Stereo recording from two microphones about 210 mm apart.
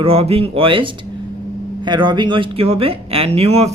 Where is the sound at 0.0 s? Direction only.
30° right (ahead or behind).